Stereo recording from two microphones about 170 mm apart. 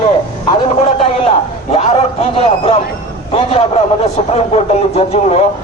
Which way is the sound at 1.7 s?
35° left (ahead or behind).